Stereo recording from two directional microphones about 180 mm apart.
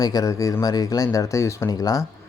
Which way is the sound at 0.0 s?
20° left (ahead or behind).